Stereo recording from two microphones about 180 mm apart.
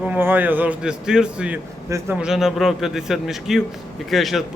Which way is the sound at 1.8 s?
15° right (ahead or behind).